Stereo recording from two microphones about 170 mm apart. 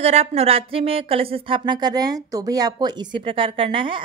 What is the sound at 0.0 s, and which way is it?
Speech, 40° right (ahead or behind).